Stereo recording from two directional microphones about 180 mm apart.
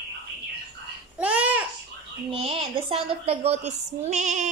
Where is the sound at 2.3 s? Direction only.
30° right (ahead or behind).